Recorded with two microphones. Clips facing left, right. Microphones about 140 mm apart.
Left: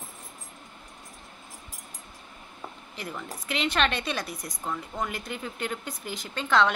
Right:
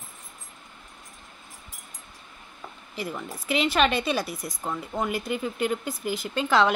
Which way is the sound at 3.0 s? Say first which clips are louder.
Right 4 dB; 5° right (ahead or behind).